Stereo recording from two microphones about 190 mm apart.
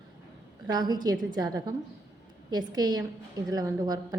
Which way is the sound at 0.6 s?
20° right (ahead or behind).